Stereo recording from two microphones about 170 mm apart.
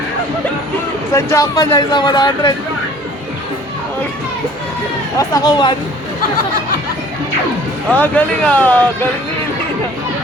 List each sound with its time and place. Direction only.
1.1 s speech: 20° left (ahead or behind)
5.1 s speech: 25° left (ahead or behind)
7.9 s speech: 10° left (ahead or behind)